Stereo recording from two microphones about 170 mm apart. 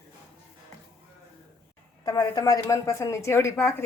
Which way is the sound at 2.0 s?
20° left (ahead or behind).